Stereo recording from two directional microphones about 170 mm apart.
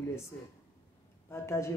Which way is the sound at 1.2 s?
15° left (ahead or behind).